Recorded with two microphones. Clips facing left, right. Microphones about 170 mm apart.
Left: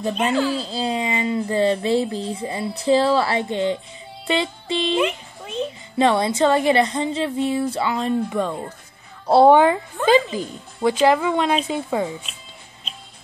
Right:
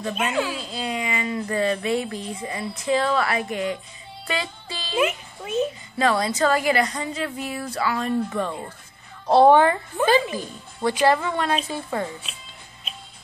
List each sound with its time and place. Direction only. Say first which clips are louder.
0.1 s speech: left 5 dB; 5° right (ahead or behind)
0.6 s speech: left 5 dB; 30° left (ahead or behind)
4.3 s music: left 7 dB; 25° left (ahead or behind)
4.9 s a sound: left 2 dB; 5° right (ahead or behind)
5.9 s speech: left 4 dB; 25° left (ahead or behind)